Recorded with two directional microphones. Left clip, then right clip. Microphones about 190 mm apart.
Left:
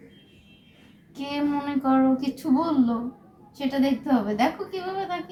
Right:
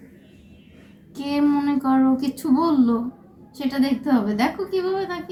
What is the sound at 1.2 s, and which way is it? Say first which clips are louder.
A woman's voice: right 6 dB; 5° right (ahead or behind).